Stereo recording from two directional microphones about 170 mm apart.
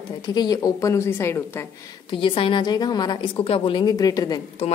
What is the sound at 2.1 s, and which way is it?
A woman's voice, 30° left (ahead or behind).